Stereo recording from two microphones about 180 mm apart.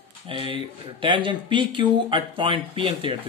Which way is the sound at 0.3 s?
30° right (ahead or behind).